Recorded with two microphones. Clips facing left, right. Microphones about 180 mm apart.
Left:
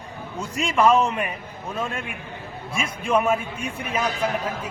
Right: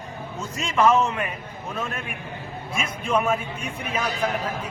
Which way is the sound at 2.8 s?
10° left (ahead or behind).